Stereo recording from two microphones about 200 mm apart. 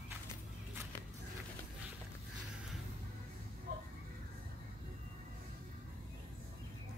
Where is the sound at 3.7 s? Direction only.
45° right (ahead or behind).